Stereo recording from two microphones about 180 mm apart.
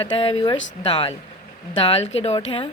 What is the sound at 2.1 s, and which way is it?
Speech, 35° left (ahead or behind).